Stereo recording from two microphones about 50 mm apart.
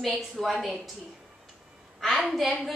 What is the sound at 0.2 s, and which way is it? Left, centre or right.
Speech, centre.